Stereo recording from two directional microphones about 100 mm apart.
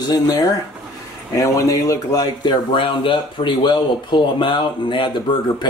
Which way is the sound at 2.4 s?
60° left (ahead or behind).